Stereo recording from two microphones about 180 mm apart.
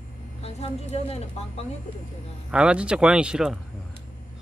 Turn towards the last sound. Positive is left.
turn(degrees=-5)  # may be behind; listen again after turning